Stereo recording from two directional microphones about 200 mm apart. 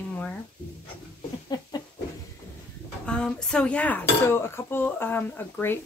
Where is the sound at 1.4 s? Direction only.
20° left (ahead or behind).